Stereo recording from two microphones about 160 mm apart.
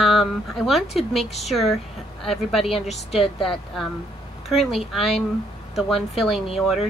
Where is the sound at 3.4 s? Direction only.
Centre (ahead or behind).